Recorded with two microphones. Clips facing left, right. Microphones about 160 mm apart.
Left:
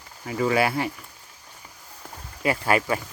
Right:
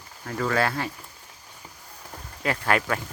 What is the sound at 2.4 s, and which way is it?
Speech, 5° left (ahead or behind).